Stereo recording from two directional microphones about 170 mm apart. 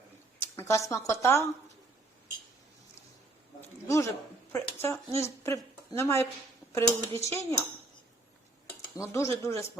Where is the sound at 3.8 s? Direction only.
15° left (ahead or behind).